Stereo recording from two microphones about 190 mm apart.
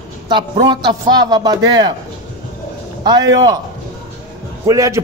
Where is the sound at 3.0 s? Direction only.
20° right (ahead or behind).